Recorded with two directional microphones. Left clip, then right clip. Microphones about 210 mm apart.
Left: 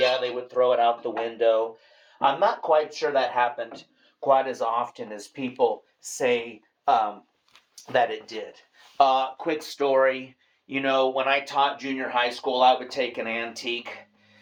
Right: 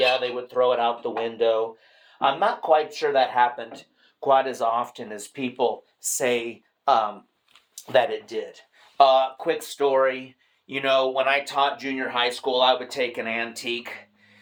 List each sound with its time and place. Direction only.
0.0 s dishes: 40° right (ahead or behind)
1.2 s speech: 40° right (ahead or behind); by 7.1 s 65° right (ahead or behind)
7.9 s speech: 40° right (ahead or behind)
9.0 s speech: 30° right (ahead or behind)